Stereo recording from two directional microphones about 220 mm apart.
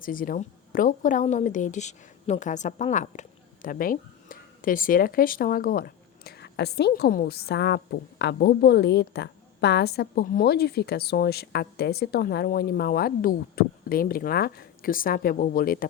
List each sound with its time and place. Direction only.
0.0 s speech: 40° left (ahead or behind)